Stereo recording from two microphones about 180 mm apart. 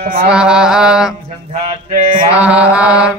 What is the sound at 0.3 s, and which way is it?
Mantra, 5° right (ahead or behind).